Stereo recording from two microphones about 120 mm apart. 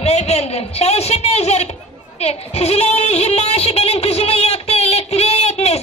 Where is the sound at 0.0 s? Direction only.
60° left (ahead or behind).